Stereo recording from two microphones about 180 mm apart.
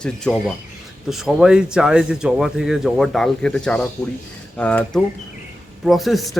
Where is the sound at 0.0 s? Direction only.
Centre (ahead or behind).